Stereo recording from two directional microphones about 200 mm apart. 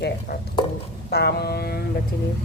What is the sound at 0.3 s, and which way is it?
A woman's voice, 50° left (ahead or behind).